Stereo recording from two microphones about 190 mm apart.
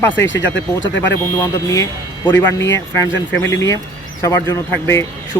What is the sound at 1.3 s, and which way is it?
Speech, 15° left (ahead or behind).